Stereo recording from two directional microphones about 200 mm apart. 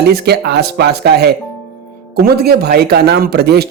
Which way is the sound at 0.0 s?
55° right (ahead or behind).